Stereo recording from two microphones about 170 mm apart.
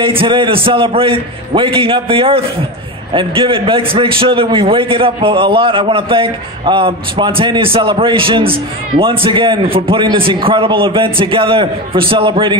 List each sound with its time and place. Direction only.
0.0 s a man's voice: 30° right (ahead or behind)